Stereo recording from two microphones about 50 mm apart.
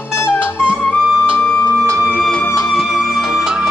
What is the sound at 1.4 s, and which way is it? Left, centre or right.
Music, left.